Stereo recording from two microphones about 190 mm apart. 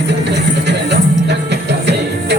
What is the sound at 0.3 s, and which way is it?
Music, 65° right (ahead or behind).